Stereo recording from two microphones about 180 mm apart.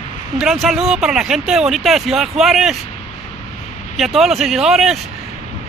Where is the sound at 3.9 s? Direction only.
Centre (ahead or behind).